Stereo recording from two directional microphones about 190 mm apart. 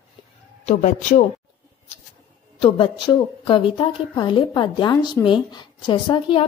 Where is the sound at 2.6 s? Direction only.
25° left (ahead or behind).